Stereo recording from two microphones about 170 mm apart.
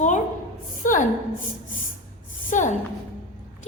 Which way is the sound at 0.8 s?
50° left (ahead or behind).